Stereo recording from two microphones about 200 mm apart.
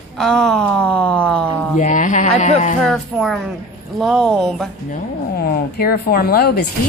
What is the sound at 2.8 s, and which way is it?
Speech, centre (ahead or behind).